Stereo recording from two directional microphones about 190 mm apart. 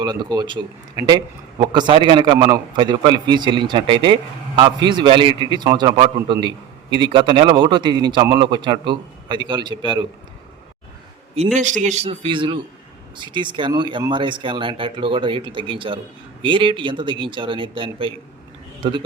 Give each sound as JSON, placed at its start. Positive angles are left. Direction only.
{"t": 0.0, "sound": "a man's voice", "side_deg": -20}
{"t": 11.3, "sound": "a man's voice", "side_deg": -40}